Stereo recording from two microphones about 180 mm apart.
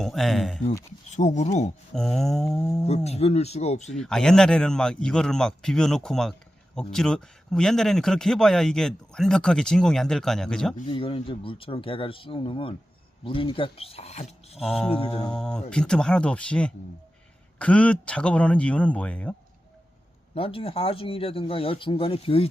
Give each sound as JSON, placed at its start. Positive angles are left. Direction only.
{"t": 0.0, "sound": "speech", "side_deg": 0}
{"t": 1.1, "sound": "speech", "side_deg": 40}
{"t": 1.9, "sound": "speech", "side_deg": 0}
{"t": 2.8, "sound": "speech", "side_deg": 35}
{"t": 3.9, "sound": "speech", "side_deg": 5}
{"t": 10.8, "sound": "speech", "side_deg": 30}
{"t": 14.6, "sound": "speech", "side_deg": 0}
{"t": 14.9, "sound": "speech", "side_deg": 30}
{"t": 15.2, "sound": "speech", "side_deg": 5}
{"t": 20.3, "sound": "speech", "side_deg": 30}